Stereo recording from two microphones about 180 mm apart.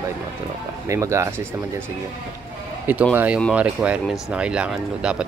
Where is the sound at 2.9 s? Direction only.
10° right (ahead or behind).